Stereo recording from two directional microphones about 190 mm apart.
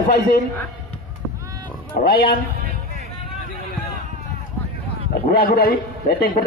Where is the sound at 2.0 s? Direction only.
50° left (ahead or behind).